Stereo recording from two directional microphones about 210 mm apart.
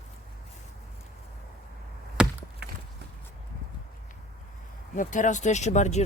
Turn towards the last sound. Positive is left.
turn(degrees=35)  # may be behind; listen again after turning